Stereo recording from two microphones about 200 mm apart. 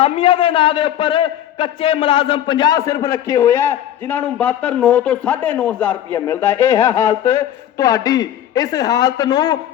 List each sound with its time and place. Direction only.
0.0 s a man's voice: 30° left (ahead or behind)